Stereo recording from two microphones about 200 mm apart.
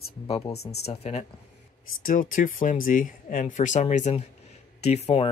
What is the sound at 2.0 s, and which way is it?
Speech, 45° left (ahead or behind).